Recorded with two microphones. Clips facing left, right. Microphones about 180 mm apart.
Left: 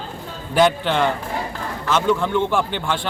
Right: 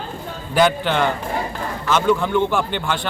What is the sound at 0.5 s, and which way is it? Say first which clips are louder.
A man's voice: even; centre (ahead or behind).